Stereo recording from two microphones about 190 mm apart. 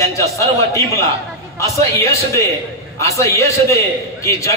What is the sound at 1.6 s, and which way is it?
A man's voice, 15° left (ahead or behind).